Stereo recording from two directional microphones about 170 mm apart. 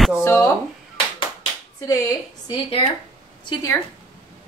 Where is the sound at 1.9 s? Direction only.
20° left (ahead or behind).